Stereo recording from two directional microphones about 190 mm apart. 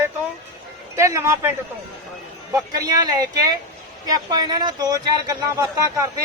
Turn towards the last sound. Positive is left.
turn(degrees=-15)  # may be behind; listen again after turning